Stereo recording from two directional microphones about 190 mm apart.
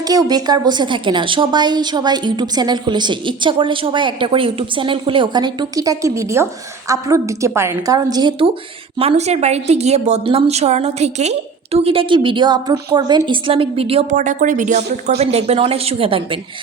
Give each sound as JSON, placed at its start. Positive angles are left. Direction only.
{"t": 0.0, "sound": "a woman's voice", "side_deg": -20}
{"t": 9.0, "sound": "a woman's voice", "side_deg": -35}